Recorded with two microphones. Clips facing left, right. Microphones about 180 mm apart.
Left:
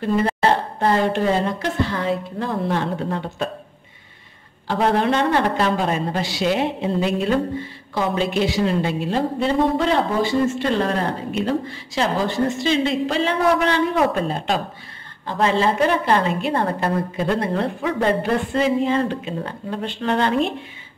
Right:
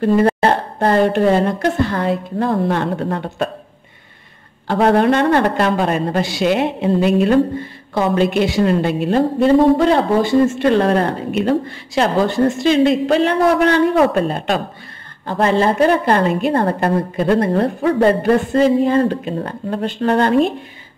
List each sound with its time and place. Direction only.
0.0 s a man's voice: 55° right (ahead or behind)
4.6 s a man's voice: 55° right (ahead or behind)